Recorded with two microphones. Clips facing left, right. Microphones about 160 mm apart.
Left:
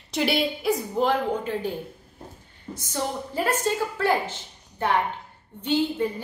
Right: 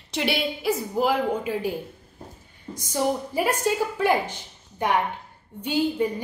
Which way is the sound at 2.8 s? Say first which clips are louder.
Right 5 dB; 15° right (ahead or behind).